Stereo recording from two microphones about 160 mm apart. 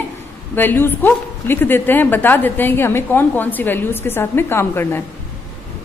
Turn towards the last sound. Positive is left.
turn(degrees=15)  # may be behind; listen again after turning